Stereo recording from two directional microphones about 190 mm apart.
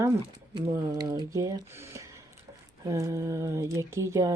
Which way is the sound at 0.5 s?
20° right (ahead or behind).